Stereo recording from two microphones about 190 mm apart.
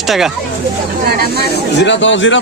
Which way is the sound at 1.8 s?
70° left (ahead or behind).